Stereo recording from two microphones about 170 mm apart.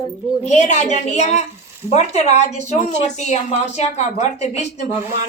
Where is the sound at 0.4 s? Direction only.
45° left (ahead or behind).